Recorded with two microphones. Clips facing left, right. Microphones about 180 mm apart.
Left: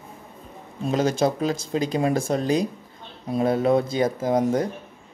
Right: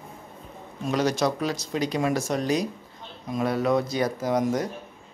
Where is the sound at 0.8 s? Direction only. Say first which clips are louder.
Left 2 dB; 25° left (ahead or behind).